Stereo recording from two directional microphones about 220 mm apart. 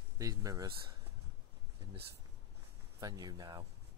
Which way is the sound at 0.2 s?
15° right (ahead or behind).